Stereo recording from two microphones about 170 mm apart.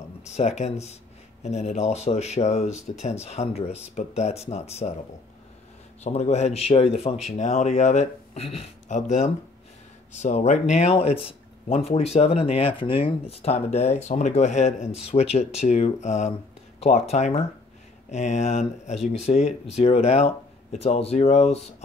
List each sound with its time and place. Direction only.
0.4 s speech: 40° left (ahead or behind)
6.0 s speech: 40° left (ahead or behind)